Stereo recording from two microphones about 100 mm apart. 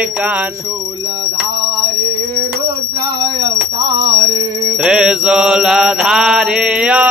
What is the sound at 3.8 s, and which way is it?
Music, 50° right (ahead or behind).